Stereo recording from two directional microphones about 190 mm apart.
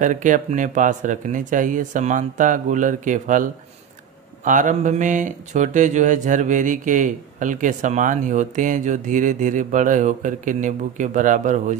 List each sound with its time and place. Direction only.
0.0 s speech: 40° right (ahead or behind)
4.5 s mantra: 45° right (ahead or behind)